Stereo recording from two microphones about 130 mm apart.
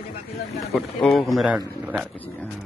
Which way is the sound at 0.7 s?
5° left (ahead or behind).